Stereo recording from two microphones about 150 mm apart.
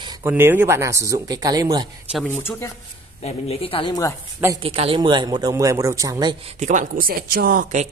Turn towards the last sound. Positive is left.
turn(degrees=-80)